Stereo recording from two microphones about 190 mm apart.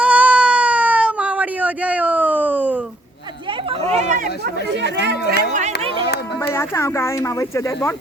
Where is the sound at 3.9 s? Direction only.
40° right (ahead or behind).